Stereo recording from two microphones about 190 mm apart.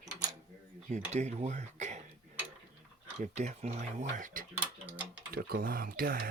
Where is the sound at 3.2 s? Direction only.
35° right (ahead or behind).